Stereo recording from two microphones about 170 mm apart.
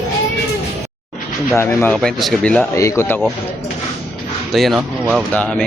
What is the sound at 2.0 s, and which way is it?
Speech, centre (ahead or behind).